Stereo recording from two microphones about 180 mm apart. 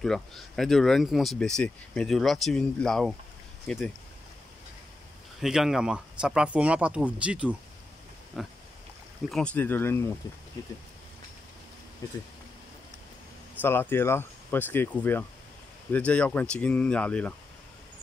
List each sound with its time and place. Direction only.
0.0 s speech: centre (ahead or behind)
5.4 s speech: centre (ahead or behind); by 10.1 s 15° left (ahead or behind)
12.0 s speech: 20° left (ahead or behind)
13.6 s speech: 10° left (ahead or behind)